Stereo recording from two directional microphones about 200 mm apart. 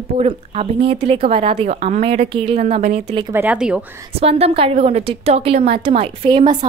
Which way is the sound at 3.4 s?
5° right (ahead or behind).